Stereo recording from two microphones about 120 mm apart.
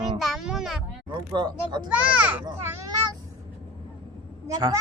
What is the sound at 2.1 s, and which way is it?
Speech, 15° right (ahead or behind).